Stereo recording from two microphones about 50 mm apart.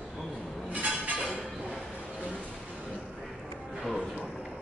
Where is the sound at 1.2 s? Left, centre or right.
Centre.